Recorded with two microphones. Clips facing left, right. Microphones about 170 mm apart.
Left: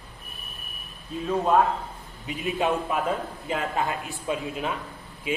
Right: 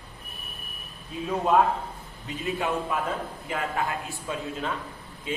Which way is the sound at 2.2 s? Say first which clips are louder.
Left 3 dB; 20° left (ahead or behind).